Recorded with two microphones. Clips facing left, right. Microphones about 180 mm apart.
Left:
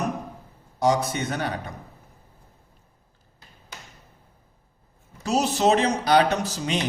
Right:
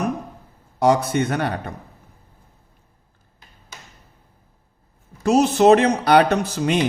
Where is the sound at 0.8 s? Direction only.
60° right (ahead or behind).